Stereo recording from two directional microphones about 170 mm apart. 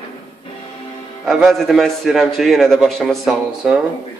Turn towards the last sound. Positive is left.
turn(degrees=-5)  # may be behind; listen again after turning